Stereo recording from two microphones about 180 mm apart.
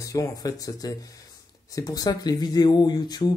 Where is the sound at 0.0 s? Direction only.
20° left (ahead or behind).